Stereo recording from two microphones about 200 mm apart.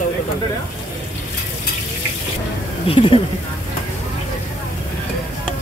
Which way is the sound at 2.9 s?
25° left (ahead or behind).